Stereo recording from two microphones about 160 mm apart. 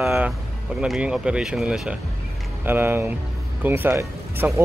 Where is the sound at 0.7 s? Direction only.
5° right (ahead or behind).